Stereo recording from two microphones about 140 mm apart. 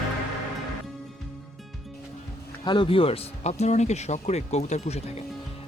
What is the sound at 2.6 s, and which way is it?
Speech, 35° left (ahead or behind).